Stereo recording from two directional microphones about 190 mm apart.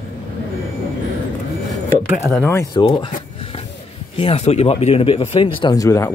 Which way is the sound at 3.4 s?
30° left (ahead or behind).